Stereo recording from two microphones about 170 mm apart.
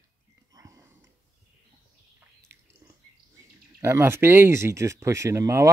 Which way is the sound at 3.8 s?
15° right (ahead or behind).